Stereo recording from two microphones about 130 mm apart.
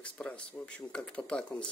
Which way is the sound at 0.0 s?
10° left (ahead or behind).